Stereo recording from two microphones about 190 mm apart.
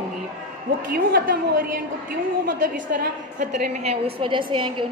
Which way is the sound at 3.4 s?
40° right (ahead or behind).